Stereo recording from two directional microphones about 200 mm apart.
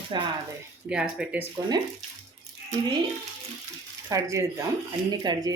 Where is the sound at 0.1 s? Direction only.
20° right (ahead or behind).